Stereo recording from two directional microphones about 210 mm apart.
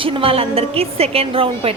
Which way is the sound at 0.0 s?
25° right (ahead or behind).